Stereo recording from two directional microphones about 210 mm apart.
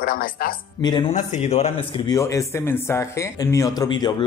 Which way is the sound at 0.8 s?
20° left (ahead or behind).